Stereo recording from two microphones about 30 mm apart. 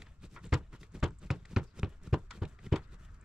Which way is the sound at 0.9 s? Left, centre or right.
Centre.